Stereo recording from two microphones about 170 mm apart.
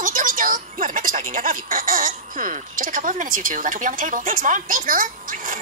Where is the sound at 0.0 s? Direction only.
50° right (ahead or behind).